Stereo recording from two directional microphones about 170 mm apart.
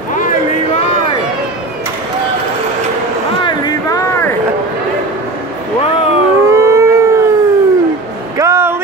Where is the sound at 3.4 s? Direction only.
20° left (ahead or behind).